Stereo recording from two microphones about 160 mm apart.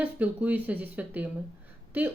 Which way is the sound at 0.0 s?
10° right (ahead or behind).